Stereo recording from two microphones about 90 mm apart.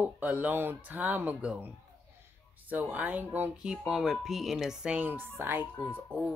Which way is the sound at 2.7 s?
20° right (ahead or behind).